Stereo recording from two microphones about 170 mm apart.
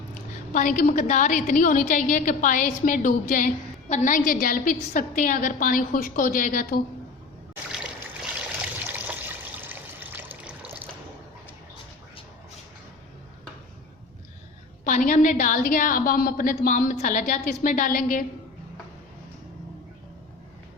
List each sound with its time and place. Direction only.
0.1 s a woman's voice: 50° left (ahead or behind)
7.5 s trickle: 5° right (ahead or behind)
14.8 s a woman's voice: 50° left (ahead or behind)